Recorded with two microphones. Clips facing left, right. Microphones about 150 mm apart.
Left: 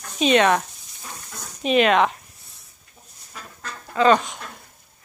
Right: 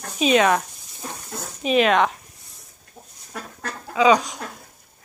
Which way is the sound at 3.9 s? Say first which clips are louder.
Even; centre (ahead or behind).